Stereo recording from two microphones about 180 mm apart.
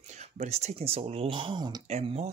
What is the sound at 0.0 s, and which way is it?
Speech, 40° right (ahead or behind).